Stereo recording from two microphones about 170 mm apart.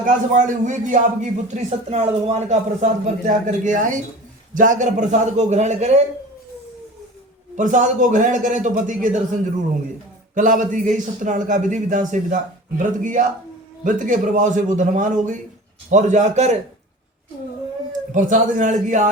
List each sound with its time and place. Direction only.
0.0 s a man's voice: 50° right (ahead or behind)
7.5 s a man's voice: 45° right (ahead or behind)
18.1 s a man's voice: 50° right (ahead or behind)